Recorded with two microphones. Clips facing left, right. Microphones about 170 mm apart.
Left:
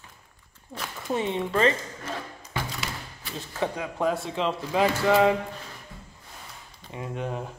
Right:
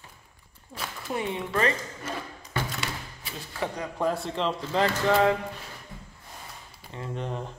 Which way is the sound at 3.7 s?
5° left (ahead or behind).